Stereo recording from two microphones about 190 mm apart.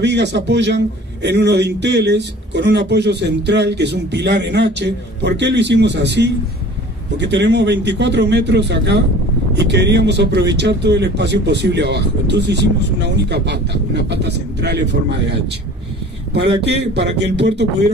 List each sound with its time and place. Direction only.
0.0 s a man's voice: 65° right (ahead or behind)
16.6 s a man's voice: 60° right (ahead or behind)